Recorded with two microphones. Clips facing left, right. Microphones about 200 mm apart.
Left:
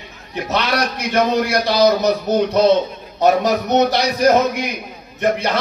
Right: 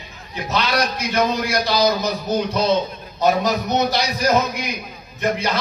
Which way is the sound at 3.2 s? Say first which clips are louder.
Left 3 dB; 65° left (ahead or behind).